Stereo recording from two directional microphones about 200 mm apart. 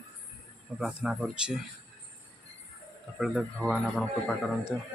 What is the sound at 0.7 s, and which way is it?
Speech, centre (ahead or behind).